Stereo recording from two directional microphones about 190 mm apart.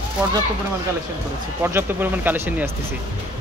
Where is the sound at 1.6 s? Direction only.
10° right (ahead or behind).